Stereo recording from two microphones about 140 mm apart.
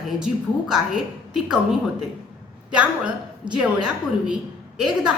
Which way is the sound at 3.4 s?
35° right (ahead or behind).